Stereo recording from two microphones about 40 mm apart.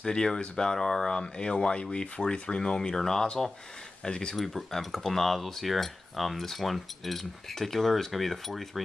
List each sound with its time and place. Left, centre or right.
0.0 s speech: centre
4.4 s speech: centre